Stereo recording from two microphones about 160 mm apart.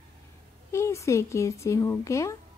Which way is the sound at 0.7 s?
20° left (ahead or behind).